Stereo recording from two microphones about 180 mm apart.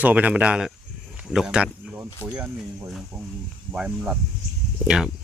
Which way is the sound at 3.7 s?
10° right (ahead or behind).